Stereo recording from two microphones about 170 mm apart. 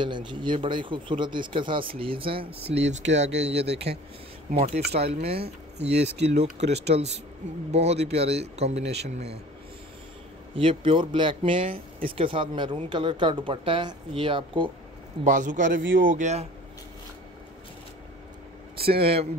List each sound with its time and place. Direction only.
0.0 s speech: 30° right (ahead or behind)
3.0 s speech: 90° right
4.5 s speech: 40° right (ahead or behind)
6.6 s speech: 85° right
7.7 s speech: 40° right (ahead or behind)
10.5 s speech: 30° right (ahead or behind)
15.2 s speech: 50° right (ahead or behind)
15.7 s speech: 90° right
16.0 s speech: 50° right (ahead or behind)
18.9 s speech: 35° right (ahead or behind)